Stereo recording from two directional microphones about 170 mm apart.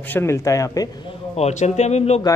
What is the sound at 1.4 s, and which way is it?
Speech, 40° left (ahead or behind).